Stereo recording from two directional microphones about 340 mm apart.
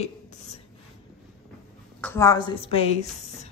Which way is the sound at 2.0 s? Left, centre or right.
Centre.